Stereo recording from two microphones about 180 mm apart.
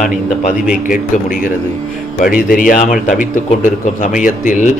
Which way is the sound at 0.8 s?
45° left (ahead or behind).